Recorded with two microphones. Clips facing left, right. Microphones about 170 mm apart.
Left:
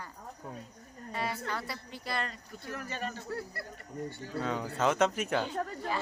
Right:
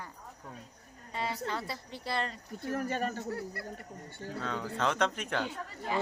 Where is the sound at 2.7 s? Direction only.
45° right (ahead or behind).